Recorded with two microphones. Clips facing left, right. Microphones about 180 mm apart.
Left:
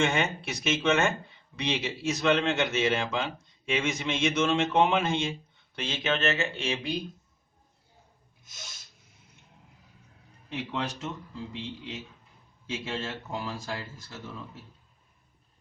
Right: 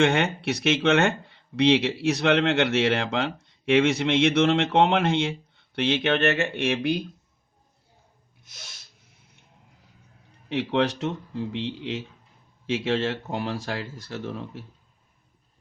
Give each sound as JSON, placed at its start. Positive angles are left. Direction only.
{"t": 0.0, "sound": "speech", "side_deg": -65}
{"t": 10.5, "sound": "speech", "side_deg": -70}